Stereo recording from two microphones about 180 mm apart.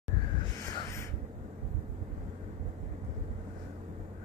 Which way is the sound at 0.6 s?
15° left (ahead or behind).